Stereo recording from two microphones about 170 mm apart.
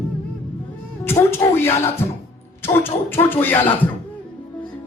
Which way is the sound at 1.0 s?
15° left (ahead or behind).